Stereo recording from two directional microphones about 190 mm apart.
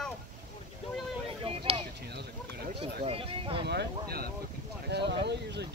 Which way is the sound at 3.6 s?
55° right (ahead or behind).